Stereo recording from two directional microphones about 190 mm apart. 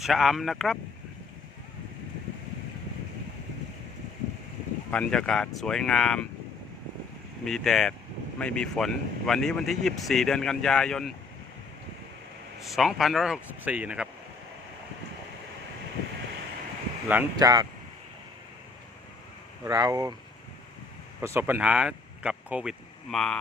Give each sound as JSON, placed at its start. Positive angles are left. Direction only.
{"t": 0.0, "sound": "speech", "side_deg": 0}
{"t": 4.9, "sound": "speech", "side_deg": 5}
{"t": 7.4, "sound": "speech", "side_deg": 0}
{"t": 12.6, "sound": "speech", "side_deg": 0}
{"t": 17.1, "sound": "speech", "side_deg": -15}
{"t": 19.6, "sound": "speech", "side_deg": -20}
{"t": 21.2, "sound": "speech", "side_deg": -10}